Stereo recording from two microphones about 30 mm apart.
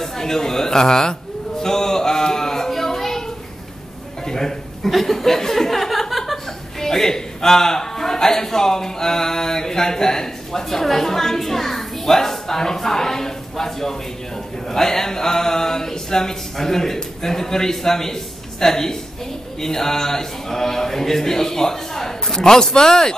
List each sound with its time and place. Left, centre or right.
0.0 s speech: centre
1.6 s a sound: centre
4.3 s a man's voice: centre
6.8 s a man's voice: centre